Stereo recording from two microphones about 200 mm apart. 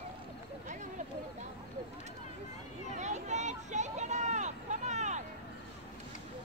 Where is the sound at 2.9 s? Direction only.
35° right (ahead or behind).